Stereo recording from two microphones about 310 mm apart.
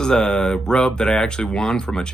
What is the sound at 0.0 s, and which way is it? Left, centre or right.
Speech, centre.